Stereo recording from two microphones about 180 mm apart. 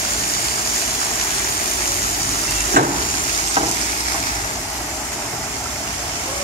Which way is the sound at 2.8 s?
50° right (ahead or behind).